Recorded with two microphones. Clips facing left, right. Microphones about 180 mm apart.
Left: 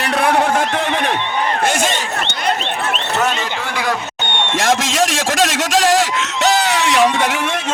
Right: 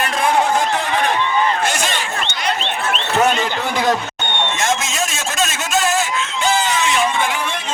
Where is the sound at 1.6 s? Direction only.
50° left (ahead or behind).